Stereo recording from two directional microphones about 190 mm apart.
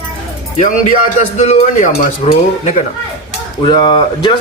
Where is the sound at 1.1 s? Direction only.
35° left (ahead or behind).